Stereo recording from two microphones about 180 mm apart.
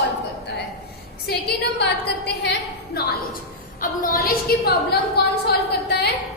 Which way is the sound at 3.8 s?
50° left (ahead or behind).